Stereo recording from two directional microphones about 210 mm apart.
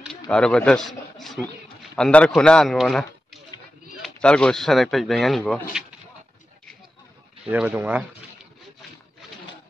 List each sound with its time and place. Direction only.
0.3 s speech: 5° left (ahead or behind)
7.5 s speech: 10° right (ahead or behind)